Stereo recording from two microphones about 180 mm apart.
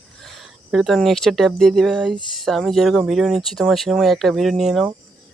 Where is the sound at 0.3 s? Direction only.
Centre (ahead or behind).